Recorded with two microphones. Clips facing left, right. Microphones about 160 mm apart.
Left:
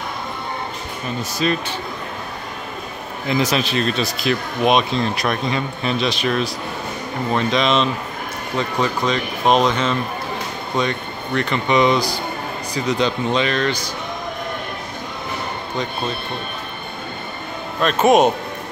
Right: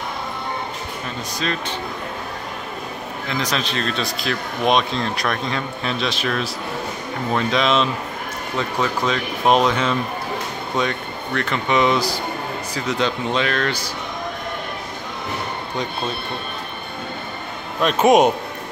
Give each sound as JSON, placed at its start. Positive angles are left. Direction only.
{"t": 1.4, "sound": "speech", "side_deg": 10}
{"t": 3.3, "sound": "speech", "side_deg": 10}
{"t": 17.8, "sound": "speech", "side_deg": -15}